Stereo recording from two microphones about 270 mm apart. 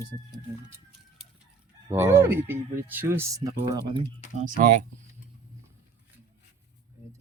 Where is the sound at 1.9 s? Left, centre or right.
Centre.